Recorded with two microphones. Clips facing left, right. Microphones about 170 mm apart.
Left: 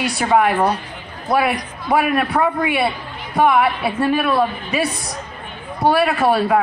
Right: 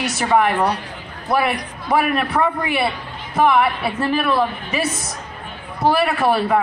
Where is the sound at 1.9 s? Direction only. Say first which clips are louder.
Left 1 dB; centre (ahead or behind).